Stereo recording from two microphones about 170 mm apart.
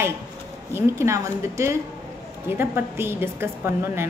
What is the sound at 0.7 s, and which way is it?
A woman's voice, 15° right (ahead or behind).